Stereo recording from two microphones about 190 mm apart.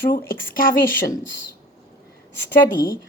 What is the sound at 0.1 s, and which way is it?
Speech, 50° left (ahead or behind).